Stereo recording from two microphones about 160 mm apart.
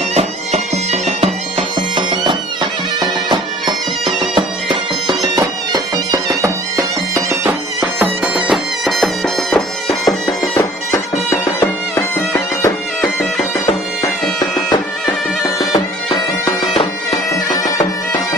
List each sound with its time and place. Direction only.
0.1 s music: 40° right (ahead or behind)
2.0 s music: 30° right (ahead or behind)
4.4 s bagpipes: 30° right (ahead or behind)
7.4 s music: 10° right (ahead or behind)
11.6 s music: 15° left (ahead or behind)
17.5 s bagpipes: 20° left (ahead or behind)